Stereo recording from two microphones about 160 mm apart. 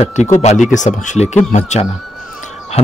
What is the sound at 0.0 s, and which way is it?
Speech, 45° left (ahead or behind).